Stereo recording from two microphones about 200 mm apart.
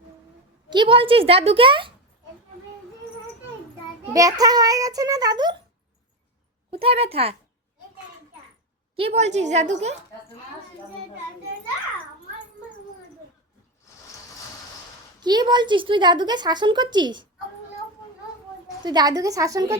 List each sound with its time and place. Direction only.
0.7 s a woman's voice: 25° right (ahead or behind)
4.1 s a child's voice: 15° right (ahead or behind)
6.7 s a woman's voice: 30° right (ahead or behind)
9.0 s a woman's voice: 30° right (ahead or behind)
15.2 s a woman's voice: 20° right (ahead or behind)
18.9 s a child's voice: 20° right (ahead or behind)